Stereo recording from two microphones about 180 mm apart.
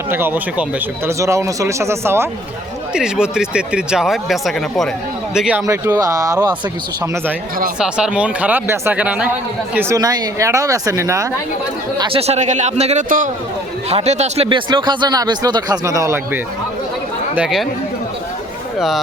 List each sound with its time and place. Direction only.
0.1 s speech: 10° right (ahead or behind)
2.9 s speech: 5° right (ahead or behind)
7.8 s speech: 5° right (ahead or behind)
9.7 s speech: 20° right (ahead or behind)
11.9 s a man's voice: 35° right (ahead or behind); by 16.4 s 15° right (ahead or behind)
17.3 s speech: 5° right (ahead or behind)